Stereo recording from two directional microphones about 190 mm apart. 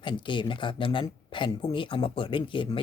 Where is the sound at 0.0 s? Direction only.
25° left (ahead or behind).